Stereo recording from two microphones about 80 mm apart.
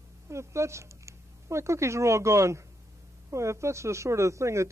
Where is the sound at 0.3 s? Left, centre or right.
Right.